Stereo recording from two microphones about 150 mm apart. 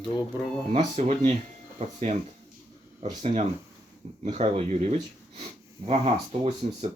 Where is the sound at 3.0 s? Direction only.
50° right (ahead or behind).